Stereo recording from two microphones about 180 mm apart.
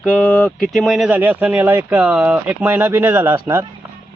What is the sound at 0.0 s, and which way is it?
Speech, 5° left (ahead or behind).